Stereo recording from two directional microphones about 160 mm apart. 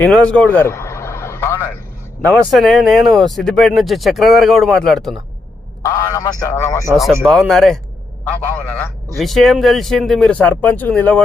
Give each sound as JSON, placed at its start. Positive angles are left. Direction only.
{"t": 0.0, "sound": "vehicle", "side_deg": 5}
{"t": 2.2, "sound": "speech", "side_deg": 5}
{"t": 5.8, "sound": "a man's voice", "side_deg": 20}
{"t": 6.9, "sound": "a man's voice", "side_deg": 0}
{"t": 9.1, "sound": "speech", "side_deg": 0}